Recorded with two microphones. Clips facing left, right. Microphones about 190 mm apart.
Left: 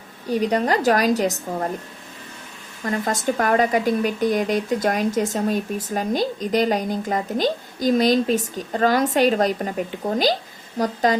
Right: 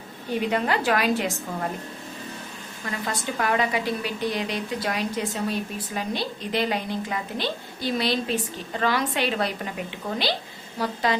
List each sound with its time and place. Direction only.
0.3 s a woman's voice: 40° left (ahead or behind)
2.8 s speech: 45° left (ahead or behind)